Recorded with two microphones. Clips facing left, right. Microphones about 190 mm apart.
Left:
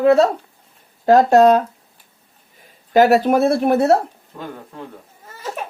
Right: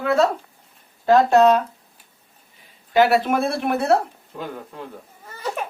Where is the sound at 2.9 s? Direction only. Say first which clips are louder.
Left 4 dB; 40° left (ahead or behind).